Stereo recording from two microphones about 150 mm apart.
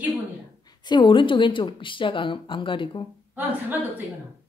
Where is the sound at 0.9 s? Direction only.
30° left (ahead or behind).